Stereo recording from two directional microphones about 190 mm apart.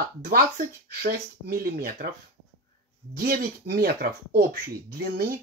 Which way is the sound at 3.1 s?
50° right (ahead or behind).